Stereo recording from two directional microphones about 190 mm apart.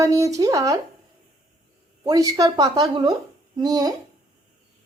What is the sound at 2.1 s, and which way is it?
Speech, 20° right (ahead or behind).